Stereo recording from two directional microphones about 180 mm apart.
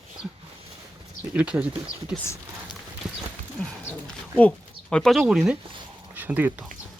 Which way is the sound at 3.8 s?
10° left (ahead or behind).